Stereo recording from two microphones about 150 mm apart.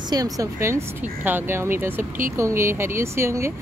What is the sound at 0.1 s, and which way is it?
Speech, 25° right (ahead or behind).